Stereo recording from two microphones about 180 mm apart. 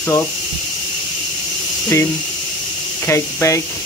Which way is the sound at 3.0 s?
15° left (ahead or behind).